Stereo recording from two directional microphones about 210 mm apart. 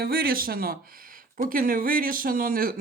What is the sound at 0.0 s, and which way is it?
Speech, 45° right (ahead or behind).